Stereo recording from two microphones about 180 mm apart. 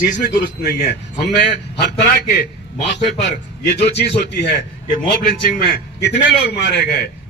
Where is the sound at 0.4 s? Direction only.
60° left (ahead or behind).